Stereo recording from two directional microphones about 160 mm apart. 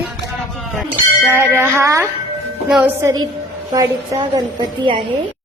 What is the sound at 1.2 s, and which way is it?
A woman's voice, 15° right (ahead or behind).